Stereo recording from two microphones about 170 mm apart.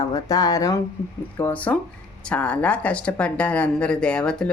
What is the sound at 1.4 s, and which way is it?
A woman's voice, 10° left (ahead or behind).